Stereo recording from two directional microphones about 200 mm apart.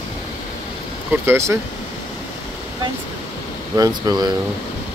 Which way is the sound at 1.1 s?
10° right (ahead or behind).